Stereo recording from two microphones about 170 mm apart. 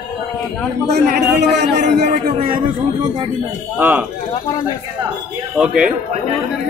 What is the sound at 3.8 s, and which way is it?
Speech, 10° right (ahead or behind).